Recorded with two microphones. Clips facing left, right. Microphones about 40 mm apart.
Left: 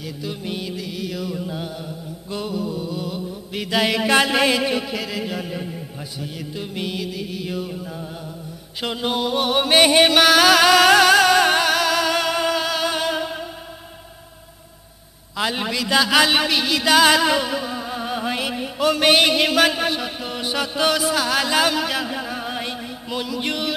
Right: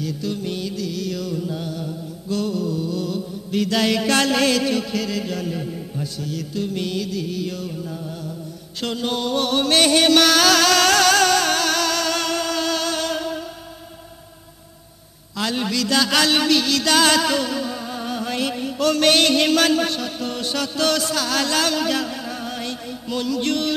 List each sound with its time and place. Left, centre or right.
0.0 s music: centre
15.3 s a man's voice: centre